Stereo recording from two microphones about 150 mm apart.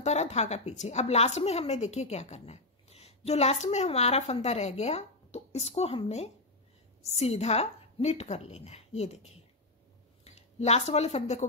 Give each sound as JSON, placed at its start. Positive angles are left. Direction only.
{"t": 0.0, "sound": "a woman's voice", "side_deg": 50}